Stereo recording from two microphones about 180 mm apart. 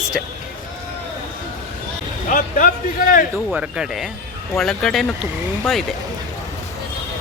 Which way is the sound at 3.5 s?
5° right (ahead or behind).